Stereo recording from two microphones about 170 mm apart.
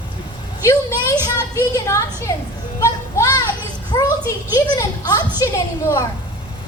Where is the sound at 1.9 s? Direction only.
15° left (ahead or behind).